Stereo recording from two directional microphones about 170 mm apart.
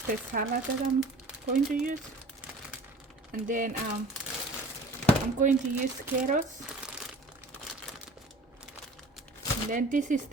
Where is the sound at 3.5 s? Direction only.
50° right (ahead or behind).